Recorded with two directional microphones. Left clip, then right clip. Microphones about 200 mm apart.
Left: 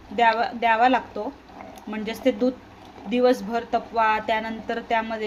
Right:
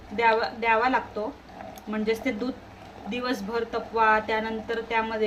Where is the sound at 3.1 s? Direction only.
40° left (ahead or behind).